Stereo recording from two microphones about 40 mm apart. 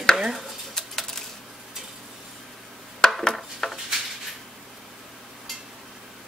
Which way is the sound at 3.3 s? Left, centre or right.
Centre.